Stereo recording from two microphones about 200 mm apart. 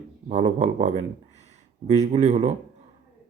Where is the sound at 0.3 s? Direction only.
35° right (ahead or behind).